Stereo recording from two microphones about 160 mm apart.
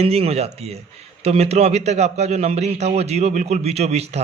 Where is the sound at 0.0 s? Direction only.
40° right (ahead or behind).